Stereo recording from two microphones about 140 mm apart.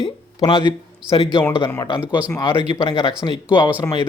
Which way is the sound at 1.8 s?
35° left (ahead or behind).